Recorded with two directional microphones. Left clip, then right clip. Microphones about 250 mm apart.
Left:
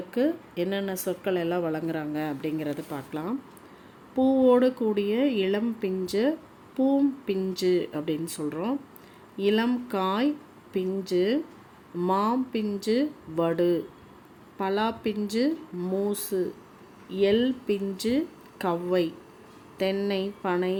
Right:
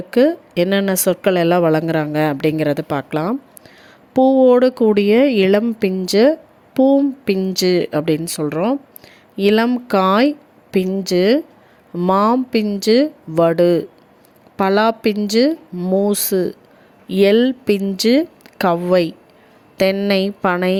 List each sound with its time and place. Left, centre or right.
0.1 s speech: right